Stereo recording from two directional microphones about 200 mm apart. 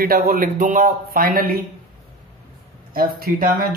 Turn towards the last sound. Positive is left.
turn(degrees=-50)  # may be behind; listen again after turning